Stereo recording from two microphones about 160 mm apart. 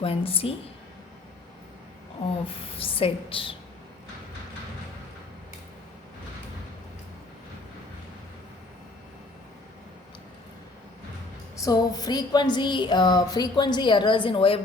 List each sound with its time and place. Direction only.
0.0 s a woman's voice: 35° left (ahead or behind)
2.6 s a woman's voice: 35° left (ahead or behind)
11.5 s a sound: 20° left (ahead or behind)